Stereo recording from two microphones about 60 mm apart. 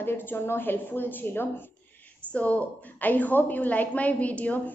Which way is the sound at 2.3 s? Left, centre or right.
Left.